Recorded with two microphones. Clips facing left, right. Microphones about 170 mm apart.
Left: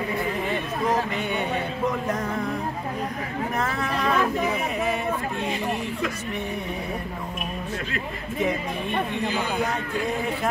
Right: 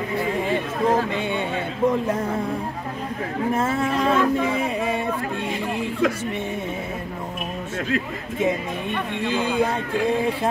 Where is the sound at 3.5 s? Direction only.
25° right (ahead or behind).